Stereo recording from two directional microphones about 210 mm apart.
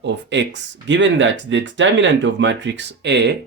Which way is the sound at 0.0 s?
55° right (ahead or behind).